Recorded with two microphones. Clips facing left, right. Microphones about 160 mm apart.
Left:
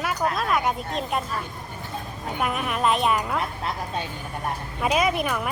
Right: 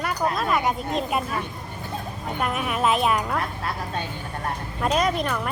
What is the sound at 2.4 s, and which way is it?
Speech, centre (ahead or behind).